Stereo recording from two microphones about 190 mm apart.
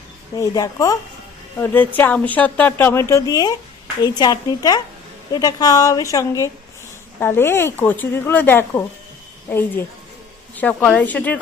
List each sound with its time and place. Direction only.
0.3 s a woman's voice: 15° left (ahead or behind)